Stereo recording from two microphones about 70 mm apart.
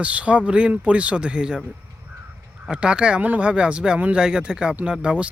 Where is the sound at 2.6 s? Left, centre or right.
Centre.